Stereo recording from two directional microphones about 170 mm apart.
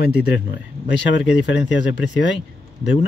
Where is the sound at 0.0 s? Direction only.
70° left (ahead or behind).